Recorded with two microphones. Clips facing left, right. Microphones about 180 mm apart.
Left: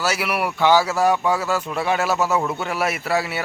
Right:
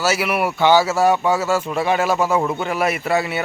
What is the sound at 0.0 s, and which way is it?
A man's voice, centre (ahead or behind).